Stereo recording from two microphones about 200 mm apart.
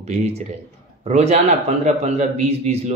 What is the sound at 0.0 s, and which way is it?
A man's voice, 35° right (ahead or behind).